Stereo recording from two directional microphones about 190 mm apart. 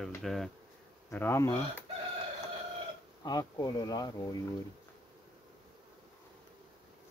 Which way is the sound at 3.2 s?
20° left (ahead or behind).